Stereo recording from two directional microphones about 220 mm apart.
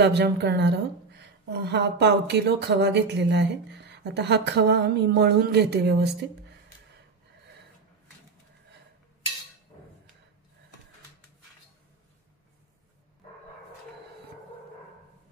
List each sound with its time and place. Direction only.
0.0 s a woman's voice: 50° right (ahead or behind)